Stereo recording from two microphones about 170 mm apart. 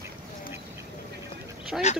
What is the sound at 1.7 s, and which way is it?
Speech, centre (ahead or behind).